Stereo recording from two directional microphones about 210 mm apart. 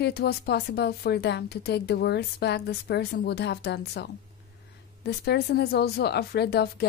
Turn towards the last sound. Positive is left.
turn(degrees=50)  # may be behind; listen again after turning